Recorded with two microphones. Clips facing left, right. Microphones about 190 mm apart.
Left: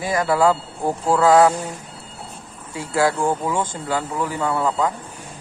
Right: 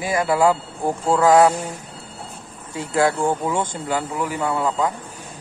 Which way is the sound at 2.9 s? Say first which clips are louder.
Even; 25° right (ahead or behind).